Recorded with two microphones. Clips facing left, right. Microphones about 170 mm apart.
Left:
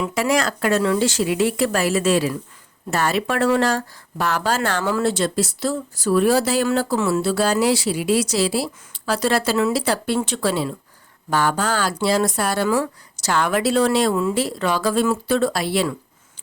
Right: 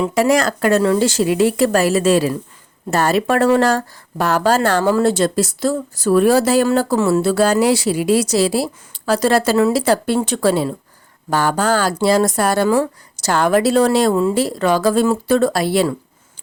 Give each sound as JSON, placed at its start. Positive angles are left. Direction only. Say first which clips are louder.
{"t": 0.0, "sound": "speech", "louder": "right 5 dB", "side_deg": -40}